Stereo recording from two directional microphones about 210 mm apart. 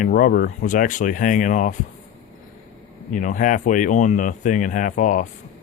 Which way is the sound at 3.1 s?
40° left (ahead or behind).